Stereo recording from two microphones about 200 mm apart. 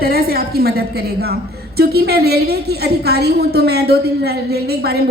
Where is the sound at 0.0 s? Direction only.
50° right (ahead or behind).